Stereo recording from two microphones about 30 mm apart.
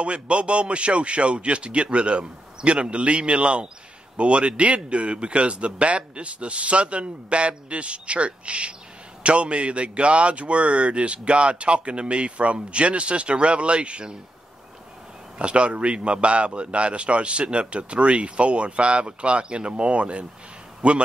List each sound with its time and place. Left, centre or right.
0.0 s a man's voice: right
15.3 s a man's voice: right